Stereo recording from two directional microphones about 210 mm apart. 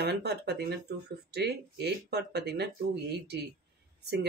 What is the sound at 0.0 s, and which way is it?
Speech, 50° right (ahead or behind).